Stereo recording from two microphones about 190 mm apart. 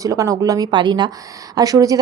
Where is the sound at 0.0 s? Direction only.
15° right (ahead or behind).